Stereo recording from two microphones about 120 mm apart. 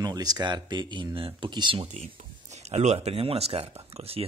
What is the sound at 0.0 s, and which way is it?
Speech, 35° right (ahead or behind).